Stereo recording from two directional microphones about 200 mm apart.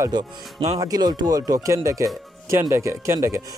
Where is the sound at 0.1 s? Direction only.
20° right (ahead or behind).